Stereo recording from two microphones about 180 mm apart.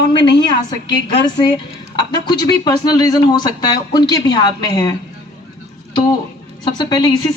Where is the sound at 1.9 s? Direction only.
25° left (ahead or behind).